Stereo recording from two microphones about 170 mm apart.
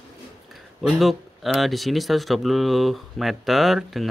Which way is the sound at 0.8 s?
Centre (ahead or behind).